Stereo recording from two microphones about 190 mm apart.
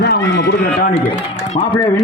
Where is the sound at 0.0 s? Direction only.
60° left (ahead or behind).